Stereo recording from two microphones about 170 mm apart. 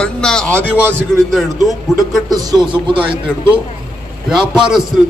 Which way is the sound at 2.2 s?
25° right (ahead or behind).